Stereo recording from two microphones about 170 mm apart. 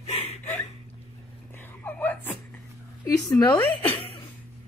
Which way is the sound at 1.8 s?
10° left (ahead or behind).